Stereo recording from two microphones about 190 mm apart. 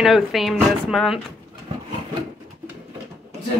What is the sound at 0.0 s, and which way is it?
Speech, centre (ahead or behind).